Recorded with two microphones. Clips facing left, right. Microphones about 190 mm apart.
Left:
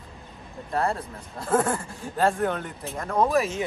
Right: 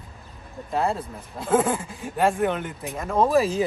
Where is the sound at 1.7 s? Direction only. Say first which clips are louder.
Right 1 dB; 15° right (ahead or behind).